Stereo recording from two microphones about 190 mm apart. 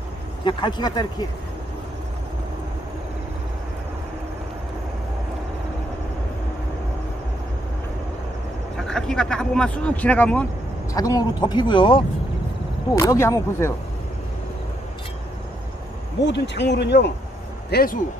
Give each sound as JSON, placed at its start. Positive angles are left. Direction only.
{"t": 0.5, "sound": "speech", "side_deg": 25}
{"t": 8.8, "sound": "speech", "side_deg": 5}
{"t": 10.9, "sound": "speech", "side_deg": 20}
{"t": 16.3, "sound": "speech", "side_deg": 65}
{"t": 17.6, "sound": "speech", "side_deg": 50}